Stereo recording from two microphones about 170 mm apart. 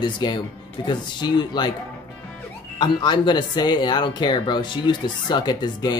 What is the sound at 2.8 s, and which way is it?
Speech, 25° left (ahead or behind).